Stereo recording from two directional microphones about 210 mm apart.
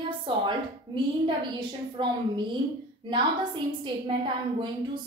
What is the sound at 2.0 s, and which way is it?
Speech, 25° right (ahead or behind).